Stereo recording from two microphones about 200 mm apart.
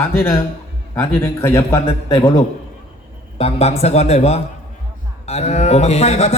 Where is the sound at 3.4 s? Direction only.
30° left (ahead or behind).